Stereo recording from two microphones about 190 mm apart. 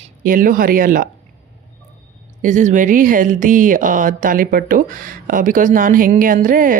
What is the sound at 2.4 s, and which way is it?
Speech, 40° right (ahead or behind).